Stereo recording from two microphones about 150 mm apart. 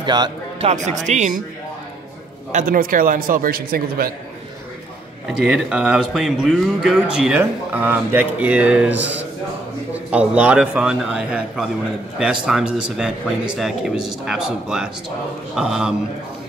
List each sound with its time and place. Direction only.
0.0 s music: 30° right (ahead or behind)
0.7 s speech: 50° right (ahead or behind)
2.5 s a man's voice: 65° right (ahead or behind)
5.3 s speech: 5° right (ahead or behind)